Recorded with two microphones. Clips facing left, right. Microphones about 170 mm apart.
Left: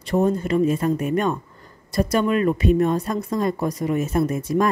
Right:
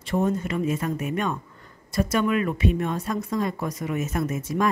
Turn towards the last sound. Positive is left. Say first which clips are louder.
# left 4 dB
turn(degrees=35)  # may be behind; listen again after turning